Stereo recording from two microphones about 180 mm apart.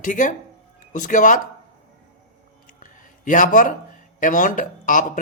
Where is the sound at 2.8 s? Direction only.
45° left (ahead or behind).